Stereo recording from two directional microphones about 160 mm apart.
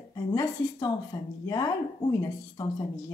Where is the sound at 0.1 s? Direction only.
25° left (ahead or behind).